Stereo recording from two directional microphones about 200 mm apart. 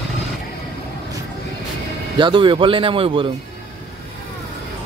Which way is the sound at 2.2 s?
25° right (ahead or behind).